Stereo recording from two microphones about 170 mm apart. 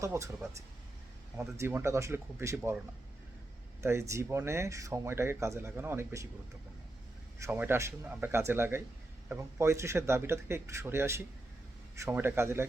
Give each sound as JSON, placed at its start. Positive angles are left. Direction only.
{"t": 0.0, "sound": "speech", "side_deg": -15}
{"t": 1.4, "sound": "speech", "side_deg": -15}
{"t": 3.8, "sound": "speech", "side_deg": -15}
{"t": 7.3, "sound": "speech", "side_deg": -15}